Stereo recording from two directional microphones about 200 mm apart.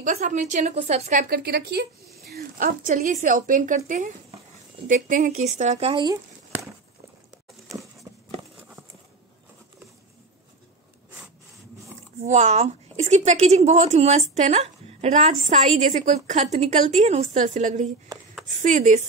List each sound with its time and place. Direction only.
0.0 s a woman's voice: 35° right (ahead or behind)
1.3 s a woman's voice: 50° right (ahead or behind)
2.3 s a woman's voice: 45° right (ahead or behind); by 6.1 s 25° right (ahead or behind)
8.1 s a sound: 15° right (ahead or behind)
12.2 s a woman's voice: 35° right (ahead or behind)